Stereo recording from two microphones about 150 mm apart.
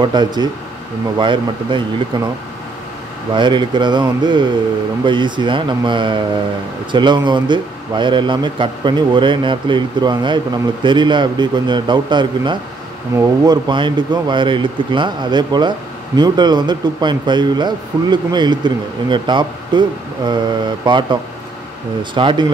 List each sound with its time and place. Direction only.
0.0 s a man's voice: 30° right (ahead or behind)
3.3 s a man's voice: 30° right (ahead or behind)